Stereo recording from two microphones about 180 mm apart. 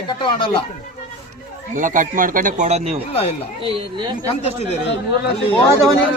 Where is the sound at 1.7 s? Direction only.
45° right (ahead or behind).